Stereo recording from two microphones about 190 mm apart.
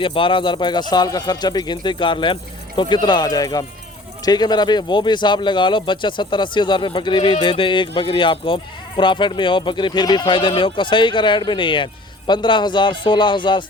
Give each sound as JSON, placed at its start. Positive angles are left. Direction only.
{"t": 0.0, "sound": "speech", "side_deg": 25}